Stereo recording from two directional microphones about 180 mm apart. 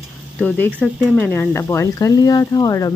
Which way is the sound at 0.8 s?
10° left (ahead or behind).